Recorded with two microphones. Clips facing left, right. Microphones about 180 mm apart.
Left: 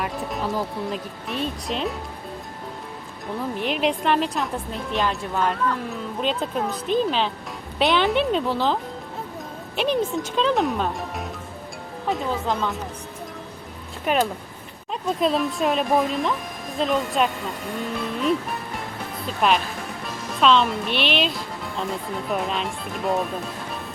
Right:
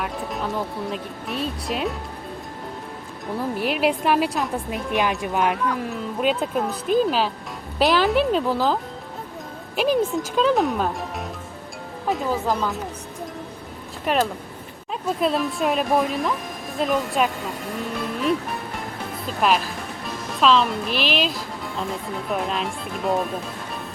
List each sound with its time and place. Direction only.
0.0 s speech: centre (ahead or behind)
3.6 s a woman's voice: 5° right (ahead or behind)
14.0 s speech: centre (ahead or behind)
19.4 s speech: centre (ahead or behind)